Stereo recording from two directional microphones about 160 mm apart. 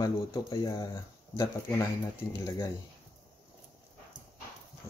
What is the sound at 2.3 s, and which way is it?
Speech, 20° left (ahead or behind).